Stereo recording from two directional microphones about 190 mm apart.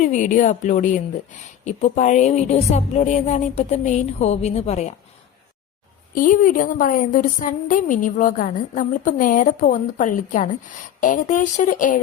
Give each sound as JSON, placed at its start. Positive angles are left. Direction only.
{"t": 0.0, "sound": "a woman's voice", "side_deg": 40}
{"t": 6.1, "sound": "a woman's voice", "side_deg": 45}